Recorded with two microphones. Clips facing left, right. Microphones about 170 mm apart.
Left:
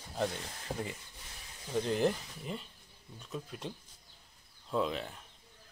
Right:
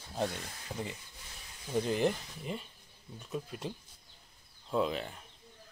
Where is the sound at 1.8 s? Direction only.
5° right (ahead or behind).